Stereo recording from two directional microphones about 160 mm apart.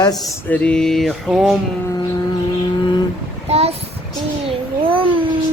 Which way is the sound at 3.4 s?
40° right (ahead or behind).